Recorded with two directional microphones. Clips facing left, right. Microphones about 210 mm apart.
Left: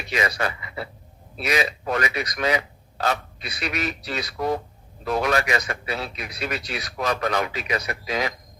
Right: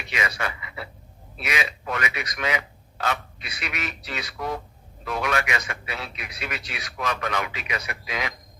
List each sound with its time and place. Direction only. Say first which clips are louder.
0.1 s speech: left 4 dB; 35° left (ahead or behind)